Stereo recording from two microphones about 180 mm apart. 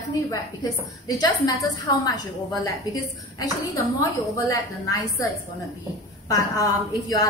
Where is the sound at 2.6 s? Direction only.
20° left (ahead or behind).